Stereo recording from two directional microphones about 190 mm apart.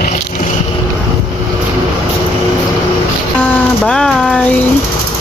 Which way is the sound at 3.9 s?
5° left (ahead or behind).